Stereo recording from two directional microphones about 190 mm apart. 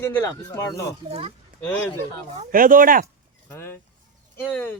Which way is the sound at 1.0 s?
30° right (ahead or behind).